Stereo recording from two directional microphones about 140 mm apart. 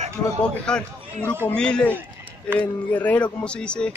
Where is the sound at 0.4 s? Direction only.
5° left (ahead or behind).